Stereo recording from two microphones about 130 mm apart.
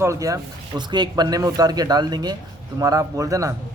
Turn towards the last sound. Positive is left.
turn(degrees=-25)  # may be behind; listen again after turning